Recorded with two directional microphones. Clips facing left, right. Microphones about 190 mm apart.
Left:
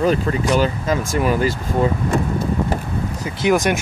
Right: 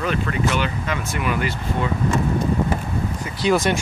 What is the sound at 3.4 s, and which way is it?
Speech, 15° left (ahead or behind).